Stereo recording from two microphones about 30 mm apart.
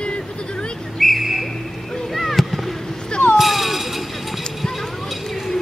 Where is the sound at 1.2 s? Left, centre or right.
Centre.